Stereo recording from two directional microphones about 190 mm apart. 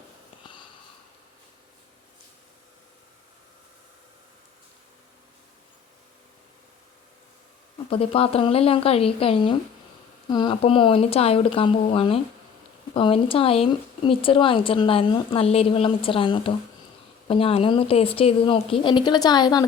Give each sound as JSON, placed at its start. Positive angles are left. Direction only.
{"t": 7.9, "sound": "speech", "side_deg": 30}